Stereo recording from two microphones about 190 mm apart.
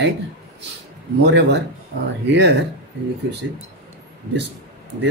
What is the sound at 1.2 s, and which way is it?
Speech, 60° right (ahead or behind).